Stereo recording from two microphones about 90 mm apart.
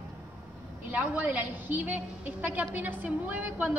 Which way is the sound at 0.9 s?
15° right (ahead or behind).